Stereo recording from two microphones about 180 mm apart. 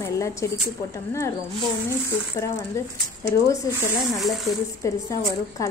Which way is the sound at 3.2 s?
15° left (ahead or behind).